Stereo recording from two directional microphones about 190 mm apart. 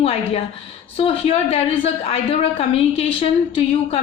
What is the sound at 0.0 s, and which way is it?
A woman's voice, 30° left (ahead or behind).